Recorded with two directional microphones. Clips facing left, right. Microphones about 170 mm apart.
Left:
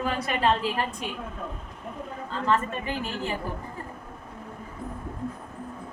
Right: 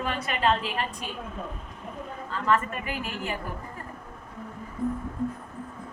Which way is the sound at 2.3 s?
25° left (ahead or behind).